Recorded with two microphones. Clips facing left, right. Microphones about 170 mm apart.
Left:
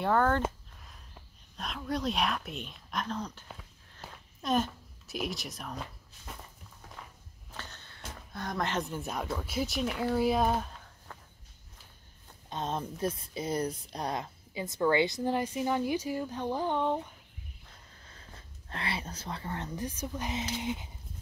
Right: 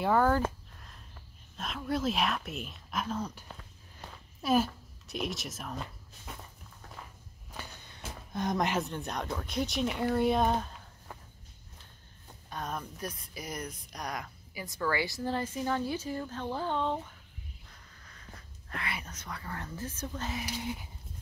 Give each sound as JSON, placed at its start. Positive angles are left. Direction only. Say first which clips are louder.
{"t": 0.0, "sound": "speech", "louder": "right 1 dB", "side_deg": -5}
{"t": 0.4, "sound": "a sound", "louder": "right 1 dB", "side_deg": 0}
{"t": 1.6, "sound": "speech", "louder": "right 1 dB", "side_deg": 0}
{"t": 4.0, "sound": "a sound", "louder": "even", "side_deg": 5}
{"t": 4.4, "sound": "speech", "louder": "right 2 dB", "side_deg": -5}
{"t": 7.5, "sound": "walk", "louder": "right 1 dB", "side_deg": -10}
{"t": 8.3, "sound": "speech", "louder": "right 4 dB", "side_deg": -20}
{"t": 8.7, "sound": "speech", "louder": "even", "side_deg": 0}
{"t": 12.4, "sound": "a woman's voice", "louder": "left 4 dB", "side_deg": 25}
{"t": 18.0, "sound": "speech", "louder": "right 1 dB", "side_deg": 30}